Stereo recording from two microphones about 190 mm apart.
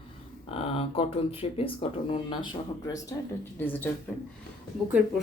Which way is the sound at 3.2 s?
10° left (ahead or behind).